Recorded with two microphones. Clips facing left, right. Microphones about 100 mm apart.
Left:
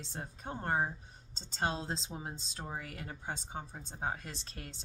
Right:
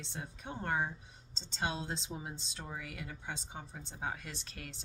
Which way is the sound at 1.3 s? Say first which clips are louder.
Left 2 dB; 45° left (ahead or behind).